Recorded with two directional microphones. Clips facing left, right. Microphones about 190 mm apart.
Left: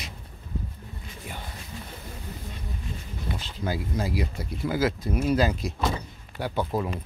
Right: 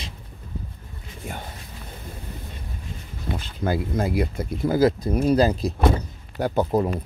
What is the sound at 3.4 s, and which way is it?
Speech, 55° right (ahead or behind).